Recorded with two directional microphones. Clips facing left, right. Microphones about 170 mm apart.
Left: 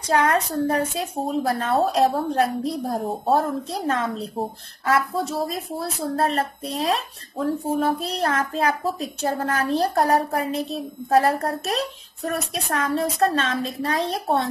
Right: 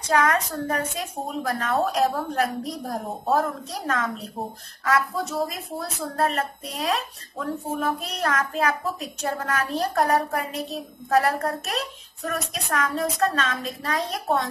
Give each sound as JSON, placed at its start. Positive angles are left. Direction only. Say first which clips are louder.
{"t": 0.1, "sound": "a woman's voice", "louder": "left 2 dB", "side_deg": 30}